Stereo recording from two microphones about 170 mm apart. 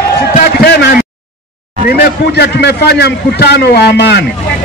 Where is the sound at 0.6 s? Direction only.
70° left (ahead or behind).